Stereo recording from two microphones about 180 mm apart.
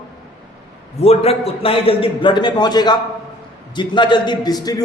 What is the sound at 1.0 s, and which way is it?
A man's voice, 35° left (ahead or behind).